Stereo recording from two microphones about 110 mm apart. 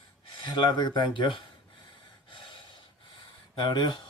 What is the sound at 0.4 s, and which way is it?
Speech, 40° left (ahead or behind).